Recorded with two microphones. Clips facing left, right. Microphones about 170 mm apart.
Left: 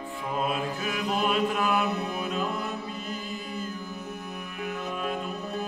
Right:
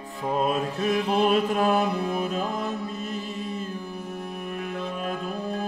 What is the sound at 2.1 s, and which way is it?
Music, 40° right (ahead or behind).